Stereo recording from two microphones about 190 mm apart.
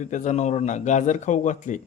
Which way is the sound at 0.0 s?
40° left (ahead or behind).